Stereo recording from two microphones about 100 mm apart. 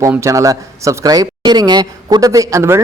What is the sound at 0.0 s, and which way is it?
Speech, 30° right (ahead or behind).